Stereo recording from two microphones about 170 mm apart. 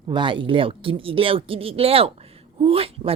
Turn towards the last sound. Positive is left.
turn(degrees=-35)  # may be behind; listen again after turning